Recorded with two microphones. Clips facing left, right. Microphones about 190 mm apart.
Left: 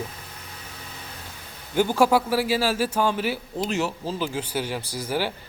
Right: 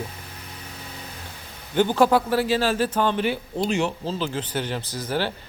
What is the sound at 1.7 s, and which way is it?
A man's voice, 10° left (ahead or behind).